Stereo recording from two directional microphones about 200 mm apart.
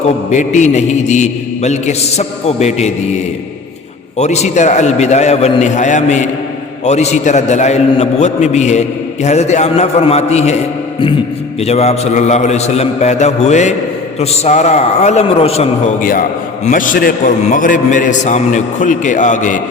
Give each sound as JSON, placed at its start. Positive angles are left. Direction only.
{"t": 0.0, "sound": "a man's voice", "side_deg": 35}
{"t": 4.2, "sound": "a man's voice", "side_deg": 35}
{"t": 11.6, "sound": "a man's voice", "side_deg": 30}
{"t": 16.6, "sound": "a man's voice", "side_deg": 40}